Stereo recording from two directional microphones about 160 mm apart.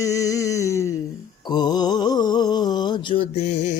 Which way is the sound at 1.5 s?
25° left (ahead or behind).